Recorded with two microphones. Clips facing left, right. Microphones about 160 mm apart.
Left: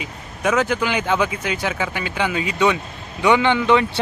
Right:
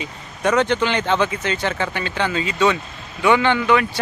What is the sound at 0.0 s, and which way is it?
Speech, 5° left (ahead or behind).